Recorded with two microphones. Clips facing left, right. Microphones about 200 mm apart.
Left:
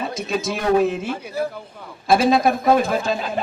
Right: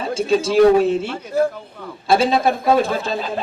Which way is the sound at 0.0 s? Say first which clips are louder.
Right 6 dB; 30° right (ahead or behind).